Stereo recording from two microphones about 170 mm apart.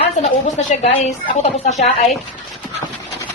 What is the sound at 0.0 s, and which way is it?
Speech, 40° left (ahead or behind).